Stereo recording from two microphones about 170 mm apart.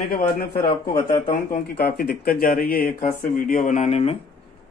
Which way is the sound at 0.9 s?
50° left (ahead or behind).